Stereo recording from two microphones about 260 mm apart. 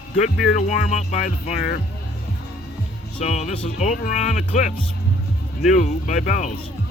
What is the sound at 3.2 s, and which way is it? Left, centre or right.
Speech, left.